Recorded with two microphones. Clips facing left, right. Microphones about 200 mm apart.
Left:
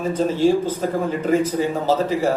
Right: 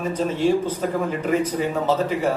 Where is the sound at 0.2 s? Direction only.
30° left (ahead or behind).